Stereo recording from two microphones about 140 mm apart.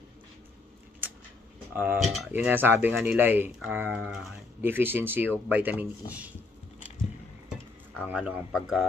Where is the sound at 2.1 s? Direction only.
10° right (ahead or behind).